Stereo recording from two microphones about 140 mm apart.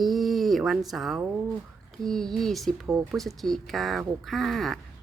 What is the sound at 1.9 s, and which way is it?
A woman's voice, centre (ahead or behind).